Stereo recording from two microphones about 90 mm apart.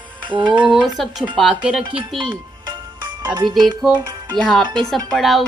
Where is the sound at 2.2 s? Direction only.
60° right (ahead or behind).